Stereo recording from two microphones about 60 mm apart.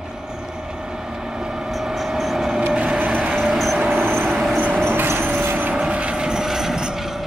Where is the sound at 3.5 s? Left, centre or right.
Centre.